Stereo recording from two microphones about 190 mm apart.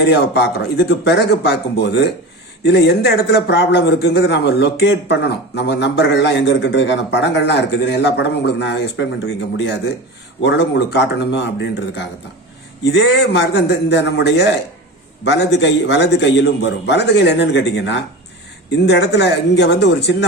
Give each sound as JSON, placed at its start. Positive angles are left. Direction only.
{"t": 0.1, "sound": "a man's voice", "side_deg": 65}
{"t": 12.8, "sound": "a man's voice", "side_deg": 65}